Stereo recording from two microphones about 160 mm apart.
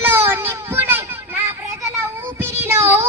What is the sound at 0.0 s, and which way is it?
Children playing, 15° right (ahead or behind).